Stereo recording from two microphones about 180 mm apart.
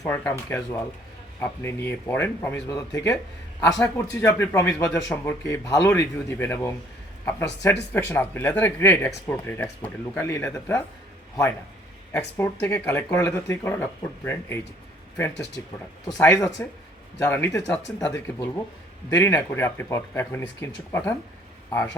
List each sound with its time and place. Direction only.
0.0 s speech: 10° left (ahead or behind)
12.1 s speech: 15° left (ahead or behind)
15.6 s speech: 10° left (ahead or behind)